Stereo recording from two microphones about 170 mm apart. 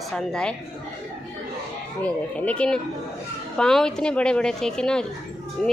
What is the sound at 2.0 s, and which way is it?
A woman's voice, 10° left (ahead or behind).